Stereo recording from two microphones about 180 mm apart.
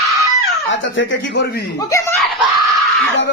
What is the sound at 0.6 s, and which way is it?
Speech, 90° left.